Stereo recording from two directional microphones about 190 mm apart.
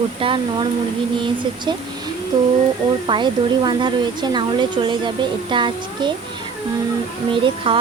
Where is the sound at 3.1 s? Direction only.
25° right (ahead or behind).